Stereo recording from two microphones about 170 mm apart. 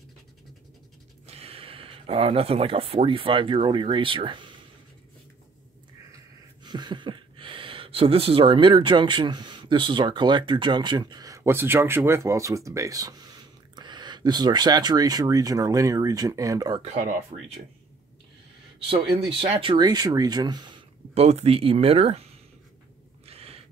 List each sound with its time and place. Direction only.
1.2 s speech: 35° right (ahead or behind)
6.6 s speech: 25° right (ahead or behind)
16.8 s speech: 45° right (ahead or behind)
19.4 s speech: 30° right (ahead or behind)
21.1 s speech: 40° right (ahead or behind)
23.2 s a sound: 35° right (ahead or behind)